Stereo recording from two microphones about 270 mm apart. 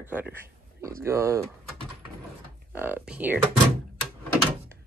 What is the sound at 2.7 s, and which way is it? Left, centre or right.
Speech, centre.